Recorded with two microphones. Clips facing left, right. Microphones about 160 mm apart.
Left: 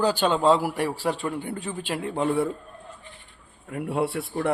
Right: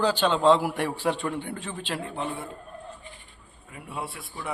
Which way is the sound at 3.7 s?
70° left (ahead or behind).